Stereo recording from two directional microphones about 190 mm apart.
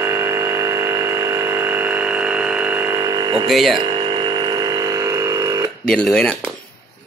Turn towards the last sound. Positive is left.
turn(degrees=0)  # may be behind; listen again after turning